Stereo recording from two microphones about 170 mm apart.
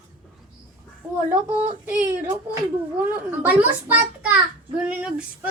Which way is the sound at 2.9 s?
10° right (ahead or behind).